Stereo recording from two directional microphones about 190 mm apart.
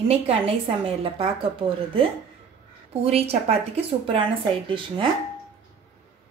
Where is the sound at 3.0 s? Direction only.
30° right (ahead or behind).